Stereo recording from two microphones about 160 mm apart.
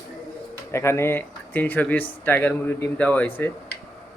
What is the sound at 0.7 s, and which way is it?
Speech, 15° left (ahead or behind).